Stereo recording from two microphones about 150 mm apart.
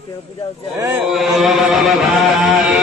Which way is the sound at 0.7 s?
20° right (ahead or behind).